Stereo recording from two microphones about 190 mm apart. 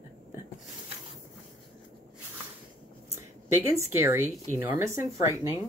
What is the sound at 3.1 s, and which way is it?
Speech, 15° right (ahead or behind).